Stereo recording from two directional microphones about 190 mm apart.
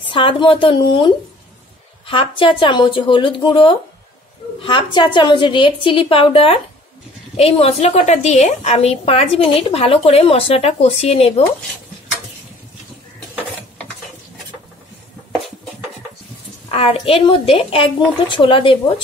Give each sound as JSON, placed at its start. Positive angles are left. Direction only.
{"t": 0.1, "sound": "a woman's voice", "side_deg": 25}
{"t": 16.6, "sound": "a woman's voice", "side_deg": 30}